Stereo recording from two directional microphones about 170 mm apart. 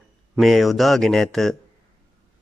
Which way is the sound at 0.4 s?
Centre (ahead or behind).